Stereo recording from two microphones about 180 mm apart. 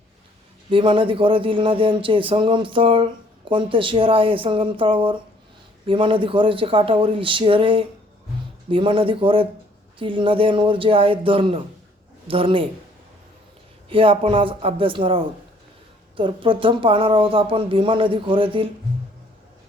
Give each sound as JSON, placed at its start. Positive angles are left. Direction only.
{"t": 0.7, "sound": "speech", "side_deg": -30}
{"t": 13.9, "sound": "speech", "side_deg": -30}